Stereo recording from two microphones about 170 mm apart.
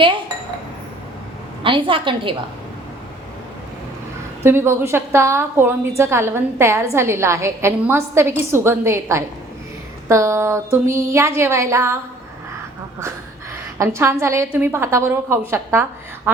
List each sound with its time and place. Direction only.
1.6 s a woman's voice: 30° right (ahead or behind)
4.4 s a woman's voice: 15° right (ahead or behind)
13.7 s a woman's voice: 15° right (ahead or behind)